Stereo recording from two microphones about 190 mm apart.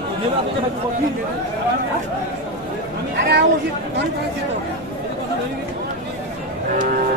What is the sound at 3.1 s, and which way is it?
Chatter, 60° right (ahead or behind).